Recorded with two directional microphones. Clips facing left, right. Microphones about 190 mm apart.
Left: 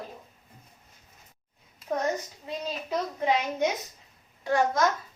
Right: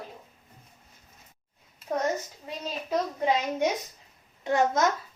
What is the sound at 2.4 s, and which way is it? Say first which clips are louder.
A woman's voice: left 2 dB; 10° right (ahead or behind).